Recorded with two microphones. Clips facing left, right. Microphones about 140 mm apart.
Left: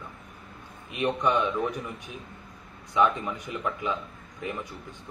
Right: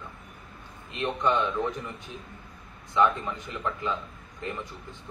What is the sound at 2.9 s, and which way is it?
A man's voice, 15° left (ahead or behind).